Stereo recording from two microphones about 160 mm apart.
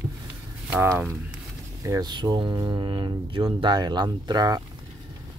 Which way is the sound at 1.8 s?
25° right (ahead or behind).